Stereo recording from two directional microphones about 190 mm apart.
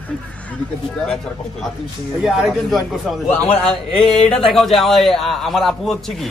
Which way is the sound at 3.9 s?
Centre (ahead or behind).